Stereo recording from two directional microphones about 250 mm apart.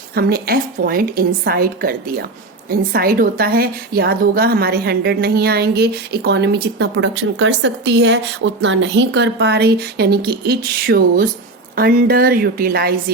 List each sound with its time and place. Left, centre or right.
0.1 s a woman's voice: right